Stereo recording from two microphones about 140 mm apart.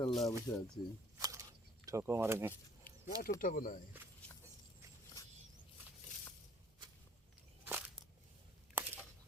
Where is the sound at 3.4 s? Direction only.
75° left (ahead or behind).